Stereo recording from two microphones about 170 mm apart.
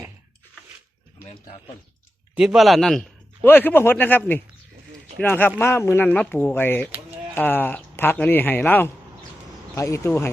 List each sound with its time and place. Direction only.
2.3 s speech: 5° right (ahead or behind); by 10.3 s 15° left (ahead or behind)